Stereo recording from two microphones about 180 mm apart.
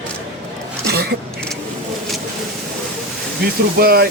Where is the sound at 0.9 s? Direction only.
60° right (ahead or behind).